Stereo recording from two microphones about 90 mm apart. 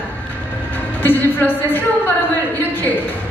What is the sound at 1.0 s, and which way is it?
Speech, 20° left (ahead or behind).